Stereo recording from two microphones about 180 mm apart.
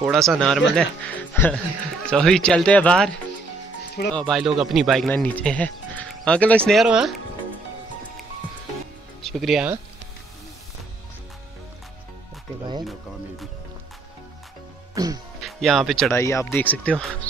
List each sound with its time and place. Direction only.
0.0 s speech: centre (ahead or behind)
4.1 s speech: 5° left (ahead or behind)
9.2 s speech: centre (ahead or behind)
15.0 s music: 20° right (ahead or behind)
15.4 s speech: centre (ahead or behind)
16.1 s speech: 15° left (ahead or behind)